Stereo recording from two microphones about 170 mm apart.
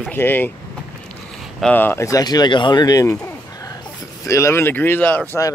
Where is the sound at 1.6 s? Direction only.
10° left (ahead or behind).